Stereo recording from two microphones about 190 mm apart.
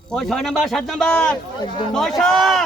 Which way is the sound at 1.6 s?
25° left (ahead or behind).